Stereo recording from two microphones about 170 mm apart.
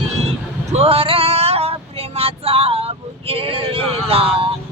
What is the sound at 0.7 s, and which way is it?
Male singing, 35° right (ahead or behind).